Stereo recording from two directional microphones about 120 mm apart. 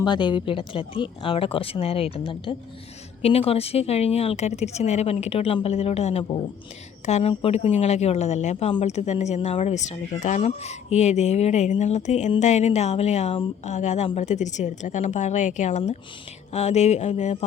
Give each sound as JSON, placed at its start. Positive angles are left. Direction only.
{"t": 0.0, "sound": "speech", "side_deg": 40}
{"t": 13.7, "sound": "speech", "side_deg": 75}
{"t": 16.5, "sound": "speech", "side_deg": 65}